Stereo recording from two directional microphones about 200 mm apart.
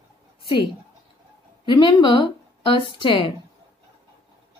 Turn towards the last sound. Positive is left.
turn(degrees=25)  # may be behind; listen again after turning